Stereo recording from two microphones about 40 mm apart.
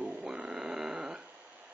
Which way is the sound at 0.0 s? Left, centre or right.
Right.